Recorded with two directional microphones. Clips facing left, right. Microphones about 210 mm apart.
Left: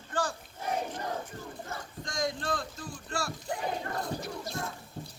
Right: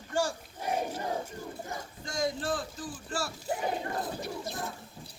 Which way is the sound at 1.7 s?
5° right (ahead or behind).